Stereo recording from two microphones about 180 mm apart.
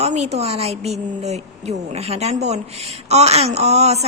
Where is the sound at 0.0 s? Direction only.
40° right (ahead or behind).